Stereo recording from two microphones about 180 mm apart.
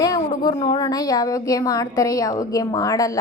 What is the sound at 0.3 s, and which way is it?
A woman's voice, 30° left (ahead or behind).